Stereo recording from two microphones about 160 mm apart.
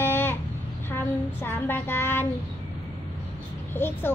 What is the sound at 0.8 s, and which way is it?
Child singing, 15° left (ahead or behind).